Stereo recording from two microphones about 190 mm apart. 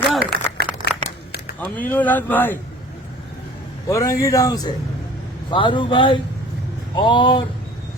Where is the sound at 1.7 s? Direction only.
10° left (ahead or behind).